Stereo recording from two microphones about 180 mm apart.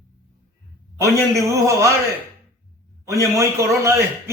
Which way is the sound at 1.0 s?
15° right (ahead or behind).